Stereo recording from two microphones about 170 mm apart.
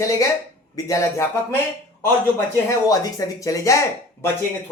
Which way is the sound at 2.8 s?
20° left (ahead or behind).